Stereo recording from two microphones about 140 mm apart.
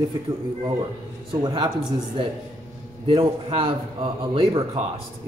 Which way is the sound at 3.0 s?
40° right (ahead or behind).